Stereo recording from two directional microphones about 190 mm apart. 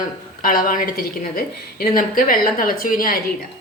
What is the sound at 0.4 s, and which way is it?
A woman's voice, 50° left (ahead or behind).